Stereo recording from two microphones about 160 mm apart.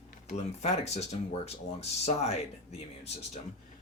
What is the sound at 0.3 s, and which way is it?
Speech, 45° left (ahead or behind).